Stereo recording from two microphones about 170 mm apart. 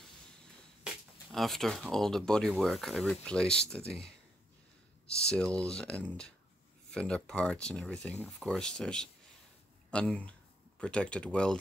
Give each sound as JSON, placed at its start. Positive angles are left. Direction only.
{"t": 0.8, "sound": "speech", "side_deg": 0}
{"t": 5.2, "sound": "speech", "side_deg": 5}